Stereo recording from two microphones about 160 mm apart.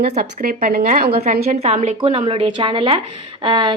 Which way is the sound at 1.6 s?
40° right (ahead or behind).